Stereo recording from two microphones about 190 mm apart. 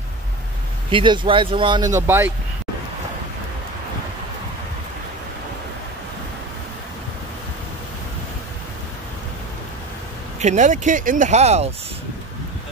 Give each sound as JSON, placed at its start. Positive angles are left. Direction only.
{"t": 0.9, "sound": "speech", "side_deg": -25}
{"t": 10.4, "sound": "speech", "side_deg": -40}